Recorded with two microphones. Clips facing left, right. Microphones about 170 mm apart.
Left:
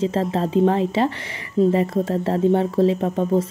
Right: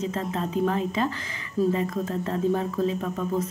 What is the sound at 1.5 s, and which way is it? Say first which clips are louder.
Speech: left 6 dB; 30° left (ahead or behind).